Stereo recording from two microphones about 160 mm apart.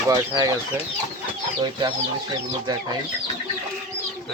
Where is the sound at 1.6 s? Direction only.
30° right (ahead or behind).